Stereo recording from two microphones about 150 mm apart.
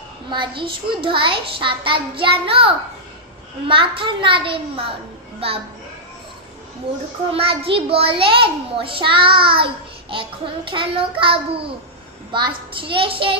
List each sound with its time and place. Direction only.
0.3 s a child's voice: 30° right (ahead or behind)
7.3 s a child's voice: 40° right (ahead or behind)